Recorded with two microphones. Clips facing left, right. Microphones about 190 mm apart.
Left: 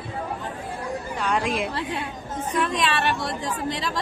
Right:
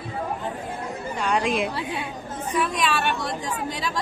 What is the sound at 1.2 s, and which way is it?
A woman's voice, centre (ahead or behind).